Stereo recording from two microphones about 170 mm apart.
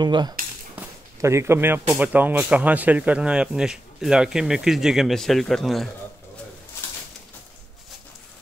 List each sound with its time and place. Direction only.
0.0 s speech: 25° right (ahead or behind); by 5.9 s centre (ahead or behind)